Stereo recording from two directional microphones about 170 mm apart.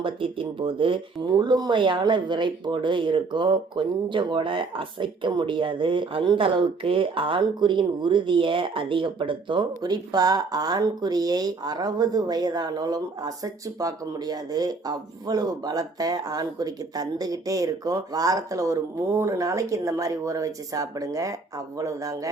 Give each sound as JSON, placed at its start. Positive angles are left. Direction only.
{"t": 0.0, "sound": "speech", "side_deg": -30}